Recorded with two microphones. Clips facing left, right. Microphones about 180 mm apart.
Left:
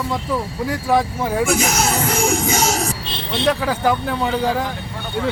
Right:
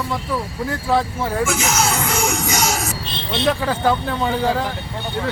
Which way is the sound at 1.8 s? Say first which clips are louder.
Left 2 dB; 40° left (ahead or behind).